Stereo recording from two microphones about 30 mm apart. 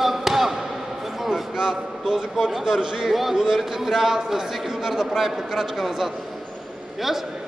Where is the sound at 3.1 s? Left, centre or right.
Centre.